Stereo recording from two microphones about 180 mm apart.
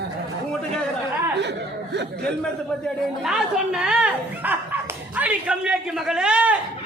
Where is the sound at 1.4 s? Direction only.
70° right (ahead or behind).